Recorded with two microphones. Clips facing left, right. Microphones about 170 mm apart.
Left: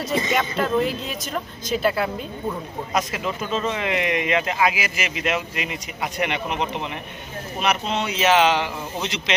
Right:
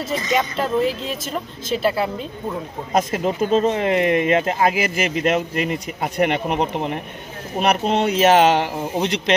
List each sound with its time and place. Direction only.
0.6 s a woman's voice: centre (ahead or behind)
2.9 s speech: 50° right (ahead or behind)